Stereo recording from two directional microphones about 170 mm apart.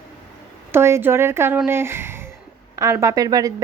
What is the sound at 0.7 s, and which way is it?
A woman's voice, 15° right (ahead or behind).